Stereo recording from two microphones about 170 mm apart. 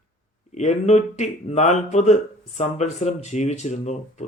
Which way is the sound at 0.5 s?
40° left (ahead or behind).